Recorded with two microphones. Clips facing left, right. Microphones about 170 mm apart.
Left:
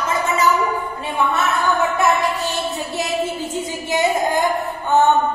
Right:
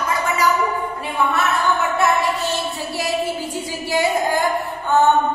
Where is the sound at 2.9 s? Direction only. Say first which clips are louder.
Right 1 dB; 20° left (ahead or behind).